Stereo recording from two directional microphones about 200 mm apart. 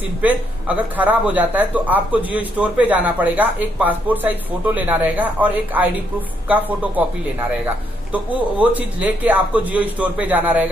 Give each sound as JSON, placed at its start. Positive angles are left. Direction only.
{"t": 0.2, "sound": "a man's voice", "side_deg": -5}